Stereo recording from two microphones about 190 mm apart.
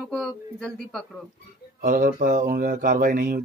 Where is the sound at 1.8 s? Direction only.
45° right (ahead or behind).